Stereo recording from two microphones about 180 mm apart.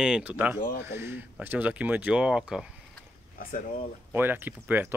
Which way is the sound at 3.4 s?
50° left (ahead or behind).